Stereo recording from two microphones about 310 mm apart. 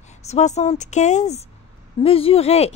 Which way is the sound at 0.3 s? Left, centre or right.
Left.